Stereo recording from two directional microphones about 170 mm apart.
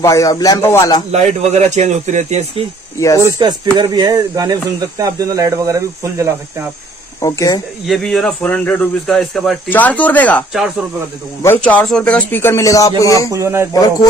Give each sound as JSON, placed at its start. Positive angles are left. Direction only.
{"t": 0.0, "sound": "speech", "side_deg": 20}
{"t": 1.1, "sound": "speech", "side_deg": -40}
{"t": 3.2, "sound": "speech", "side_deg": -25}
{"t": 7.2, "sound": "speech", "side_deg": 20}
{"t": 7.8, "sound": "speech", "side_deg": 0}
{"t": 11.4, "sound": "speech", "side_deg": 10}
{"t": 13.3, "sound": "speech", "side_deg": -15}